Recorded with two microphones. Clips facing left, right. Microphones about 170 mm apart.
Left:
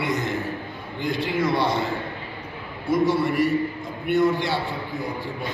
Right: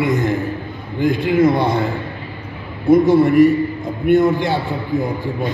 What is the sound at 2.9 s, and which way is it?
A man's voice, 50° right (ahead or behind).